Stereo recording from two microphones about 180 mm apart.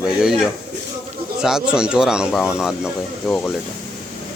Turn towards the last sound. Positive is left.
turn(degrees=5)  # may be behind; listen again after turning